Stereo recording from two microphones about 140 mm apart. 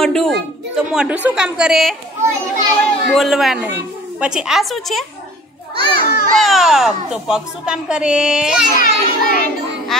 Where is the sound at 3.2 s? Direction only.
Centre (ahead or behind).